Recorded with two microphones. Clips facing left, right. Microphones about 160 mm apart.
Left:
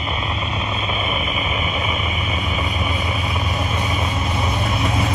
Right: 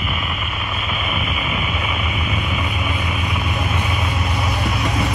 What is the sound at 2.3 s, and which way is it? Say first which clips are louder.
Vehicle: even; 35° left (ahead or behind).